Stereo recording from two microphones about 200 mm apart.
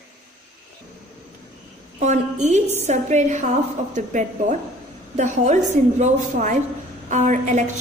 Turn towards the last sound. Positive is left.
turn(degrees=-35)  # may be behind; listen again after turning